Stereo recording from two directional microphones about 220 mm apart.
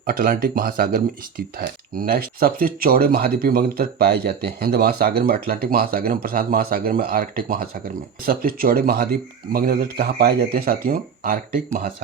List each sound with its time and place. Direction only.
0.0 s speech: 40° right (ahead or behind)